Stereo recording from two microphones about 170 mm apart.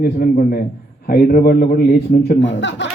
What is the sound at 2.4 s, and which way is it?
Speech, 90° left.